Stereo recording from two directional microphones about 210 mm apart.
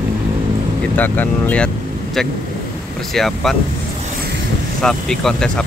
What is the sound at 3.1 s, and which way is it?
Speech, centre (ahead or behind).